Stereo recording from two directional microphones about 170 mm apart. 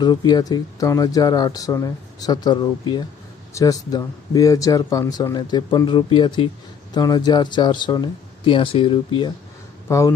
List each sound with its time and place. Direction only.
0.0 s speech: 25° left (ahead or behind)
9.9 s speech: 20° left (ahead or behind)